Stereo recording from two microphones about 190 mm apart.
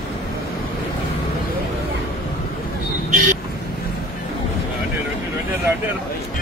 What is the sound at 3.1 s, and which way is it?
Vehicle, 45° right (ahead or behind).